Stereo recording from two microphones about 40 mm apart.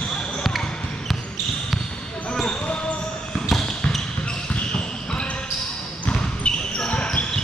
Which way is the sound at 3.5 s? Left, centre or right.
Centre.